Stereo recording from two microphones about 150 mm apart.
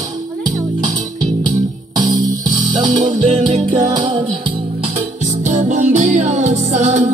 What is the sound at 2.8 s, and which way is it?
Music, 55° right (ahead or behind).